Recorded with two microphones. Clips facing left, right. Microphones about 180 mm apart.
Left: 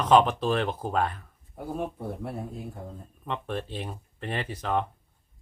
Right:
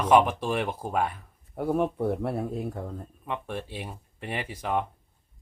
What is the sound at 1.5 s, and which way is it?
Speech, 65° right (ahead or behind).